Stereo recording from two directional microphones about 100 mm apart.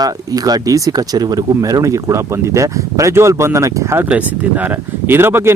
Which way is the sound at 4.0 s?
15° right (ahead or behind).